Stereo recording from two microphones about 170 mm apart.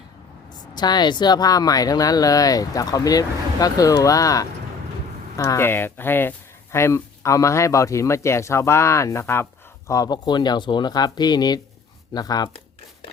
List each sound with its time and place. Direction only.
0.7 s speech: 25° left (ahead or behind)
12.1 s crumpling: 25° left (ahead or behind)